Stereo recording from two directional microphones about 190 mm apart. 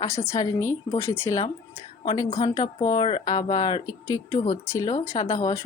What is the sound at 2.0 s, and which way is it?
A woman's voice, 25° left (ahead or behind).